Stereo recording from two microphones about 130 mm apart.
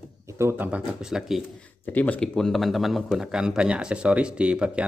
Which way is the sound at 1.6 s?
10° left (ahead or behind).